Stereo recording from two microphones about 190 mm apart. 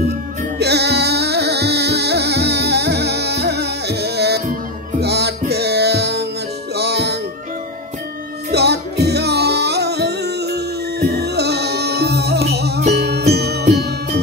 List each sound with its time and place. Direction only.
0.6 s music: 60° right (ahead or behind)
8.5 s music: 60° right (ahead or behind)